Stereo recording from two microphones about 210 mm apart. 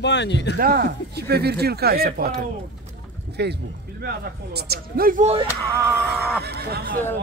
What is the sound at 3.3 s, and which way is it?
A man's voice, 50° right (ahead or behind).